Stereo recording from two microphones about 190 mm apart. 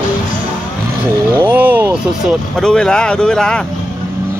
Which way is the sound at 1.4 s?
10° right (ahead or behind).